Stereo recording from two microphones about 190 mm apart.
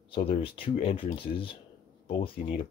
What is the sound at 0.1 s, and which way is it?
Speech, 30° left (ahead or behind).